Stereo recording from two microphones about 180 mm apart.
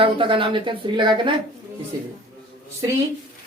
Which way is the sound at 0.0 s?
30° right (ahead or behind).